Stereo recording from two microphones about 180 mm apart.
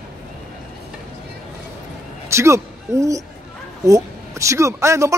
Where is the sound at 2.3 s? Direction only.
15° right (ahead or behind).